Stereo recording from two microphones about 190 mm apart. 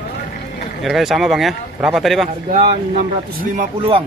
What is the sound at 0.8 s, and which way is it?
Speech, centre (ahead or behind).